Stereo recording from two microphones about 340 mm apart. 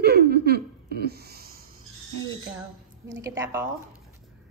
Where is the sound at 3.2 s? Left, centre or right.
Centre.